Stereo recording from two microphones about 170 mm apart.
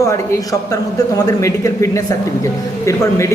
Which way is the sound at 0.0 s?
20° left (ahead or behind).